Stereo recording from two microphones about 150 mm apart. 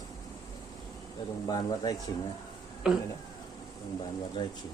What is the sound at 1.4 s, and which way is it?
Speech, 25° left (ahead or behind).